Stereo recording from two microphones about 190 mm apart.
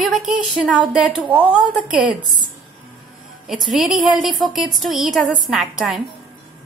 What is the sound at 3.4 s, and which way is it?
A woman's voice, centre (ahead or behind).